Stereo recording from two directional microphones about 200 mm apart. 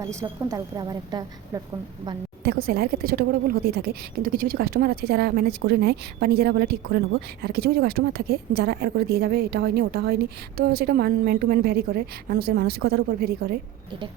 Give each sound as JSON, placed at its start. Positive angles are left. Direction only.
{"t": 0.0, "sound": "a woman's voice", "side_deg": -15}
{"t": 2.4, "sound": "a woman's voice", "side_deg": -50}